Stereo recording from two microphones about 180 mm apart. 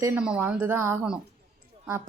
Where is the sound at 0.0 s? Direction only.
10° right (ahead or behind).